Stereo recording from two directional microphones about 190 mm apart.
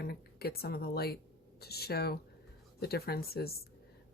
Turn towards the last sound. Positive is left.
turn(degrees=55)  # may be behind; listen again after turning